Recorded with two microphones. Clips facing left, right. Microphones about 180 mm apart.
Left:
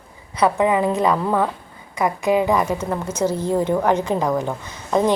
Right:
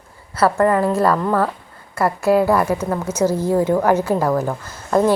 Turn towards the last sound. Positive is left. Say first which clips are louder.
# right 2 dB
turn(degrees=-5)  # may be behind; listen again after turning